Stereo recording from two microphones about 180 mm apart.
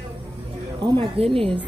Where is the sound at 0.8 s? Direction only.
30° right (ahead or behind).